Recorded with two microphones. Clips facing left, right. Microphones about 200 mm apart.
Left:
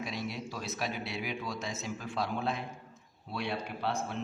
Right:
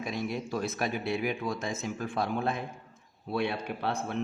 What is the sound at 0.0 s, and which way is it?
A man's voice, 50° right (ahead or behind).